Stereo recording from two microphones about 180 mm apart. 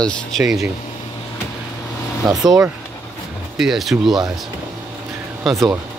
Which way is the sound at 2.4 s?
20° right (ahead or behind).